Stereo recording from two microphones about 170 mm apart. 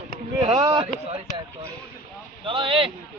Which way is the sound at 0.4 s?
30° right (ahead or behind).